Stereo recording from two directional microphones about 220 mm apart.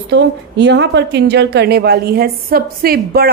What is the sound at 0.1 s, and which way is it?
A woman's voice, 50° right (ahead or behind).